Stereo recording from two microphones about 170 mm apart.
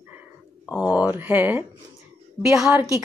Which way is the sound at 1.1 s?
10° right (ahead or behind).